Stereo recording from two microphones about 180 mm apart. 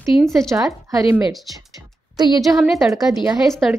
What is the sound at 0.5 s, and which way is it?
Speech, 20° right (ahead or behind).